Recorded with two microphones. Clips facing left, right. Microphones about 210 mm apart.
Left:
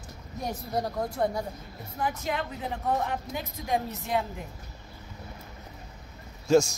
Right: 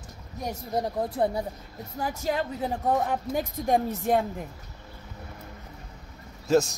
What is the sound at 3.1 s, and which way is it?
Speech, 50° right (ahead or behind).